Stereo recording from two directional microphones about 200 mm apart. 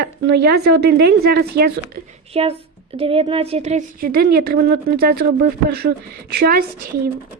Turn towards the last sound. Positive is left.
turn(degrees=-50)  # may be behind; listen again after turning